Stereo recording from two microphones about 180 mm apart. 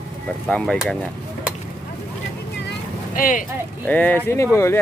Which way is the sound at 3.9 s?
10° left (ahead or behind).